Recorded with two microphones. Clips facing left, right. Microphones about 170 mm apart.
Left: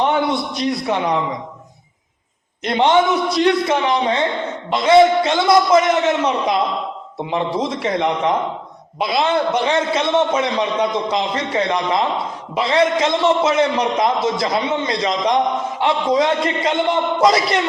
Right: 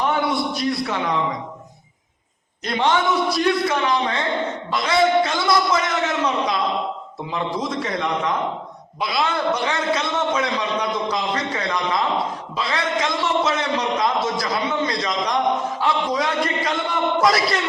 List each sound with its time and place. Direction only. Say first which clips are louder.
0.9 s a man's voice: left 4 dB; 20° left (ahead or behind)
2.6 s a man's voice: left 5 dB; 20° left (ahead or behind)